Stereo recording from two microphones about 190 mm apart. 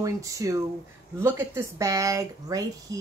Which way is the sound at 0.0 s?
15° right (ahead or behind).